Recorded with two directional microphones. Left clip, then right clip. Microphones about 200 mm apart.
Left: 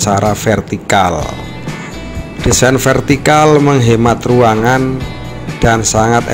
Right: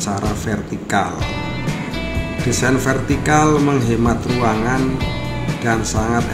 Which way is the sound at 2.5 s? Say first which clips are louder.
Left 8 dB; 40° left (ahead or behind).